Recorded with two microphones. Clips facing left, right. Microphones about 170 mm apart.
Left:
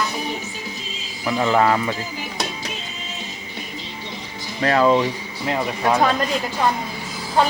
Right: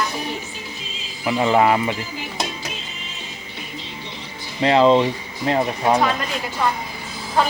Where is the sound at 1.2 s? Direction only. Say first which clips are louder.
Right 1 dB; 15° right (ahead or behind).